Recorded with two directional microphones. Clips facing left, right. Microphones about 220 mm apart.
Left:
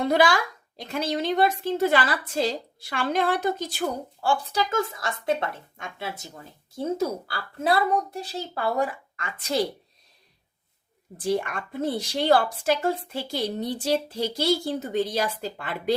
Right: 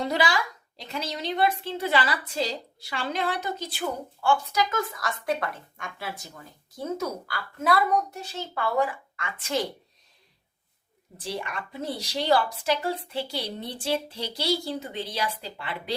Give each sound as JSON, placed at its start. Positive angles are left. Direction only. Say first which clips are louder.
{"t": 0.1, "sound": "a woman's voice", "louder": "left 5 dB", "side_deg": 55}
{"t": 11.2, "sound": "speech", "louder": "left 8 dB", "side_deg": 50}